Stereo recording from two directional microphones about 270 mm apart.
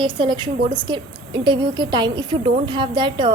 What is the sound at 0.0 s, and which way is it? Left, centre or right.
A woman's voice, centre.